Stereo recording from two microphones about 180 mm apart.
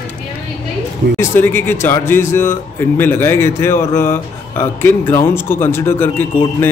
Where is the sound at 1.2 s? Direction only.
10° left (ahead or behind).